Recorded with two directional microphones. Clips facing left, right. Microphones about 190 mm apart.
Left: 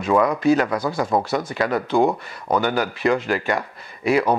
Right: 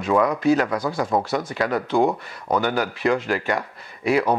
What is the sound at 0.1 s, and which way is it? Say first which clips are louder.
Speech: left 1 dB; 20° left (ahead or behind).